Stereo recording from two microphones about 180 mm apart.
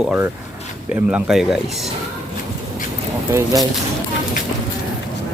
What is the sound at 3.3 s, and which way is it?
Speech, 20° right (ahead or behind).